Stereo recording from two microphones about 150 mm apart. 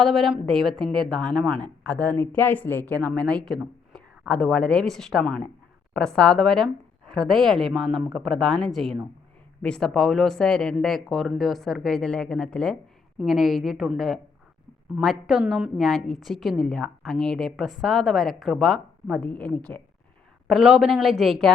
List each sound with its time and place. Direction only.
0.0 s a woman's voice: centre (ahead or behind)
20.5 s a woman's voice: centre (ahead or behind)